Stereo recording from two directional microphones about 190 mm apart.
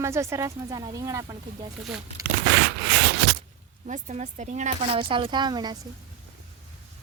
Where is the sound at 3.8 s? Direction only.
40° right (ahead or behind); by 5.8 s 20° right (ahead or behind).